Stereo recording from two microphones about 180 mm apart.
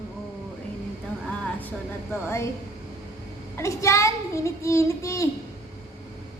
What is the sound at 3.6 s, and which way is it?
A child's voice, 15° left (ahead or behind).